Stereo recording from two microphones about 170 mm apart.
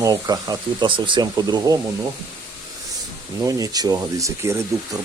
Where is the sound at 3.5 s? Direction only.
20° right (ahead or behind).